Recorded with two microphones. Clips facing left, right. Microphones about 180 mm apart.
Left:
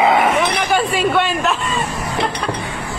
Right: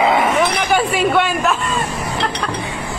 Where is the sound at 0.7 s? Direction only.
5° right (ahead or behind).